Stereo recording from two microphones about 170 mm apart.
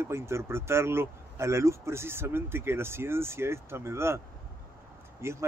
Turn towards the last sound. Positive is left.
turn(degrees=-15)  # may be behind; listen again after turning